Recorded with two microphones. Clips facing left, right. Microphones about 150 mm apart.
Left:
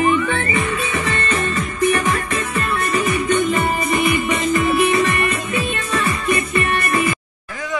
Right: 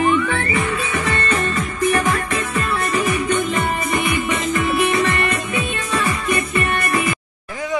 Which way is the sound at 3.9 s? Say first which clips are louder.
Left 2 dB; 15° left (ahead or behind).